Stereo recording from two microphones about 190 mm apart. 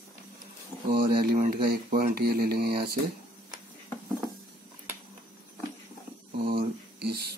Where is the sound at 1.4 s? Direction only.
45° right (ahead or behind).